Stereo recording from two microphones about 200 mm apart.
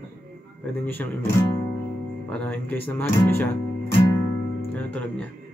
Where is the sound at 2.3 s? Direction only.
5° left (ahead or behind).